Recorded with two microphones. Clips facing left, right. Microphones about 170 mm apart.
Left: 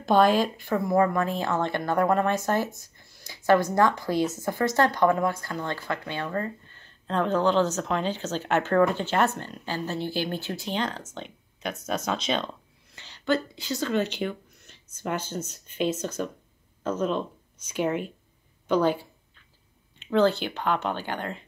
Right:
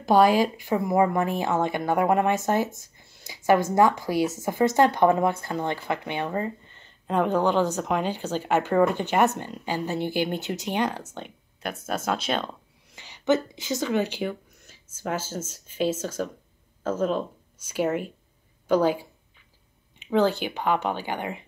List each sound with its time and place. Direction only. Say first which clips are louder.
0.0 s speech: right 2 dB; 10° right (ahead or behind)
11.8 s speech: right 1 dB; 5° right (ahead or behind)
18.7 s a sound: right 2 dB; 10° right (ahead or behind)
20.1 s speech: even; 10° right (ahead or behind)